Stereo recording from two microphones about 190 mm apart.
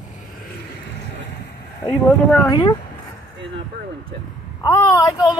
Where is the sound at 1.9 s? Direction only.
10° left (ahead or behind).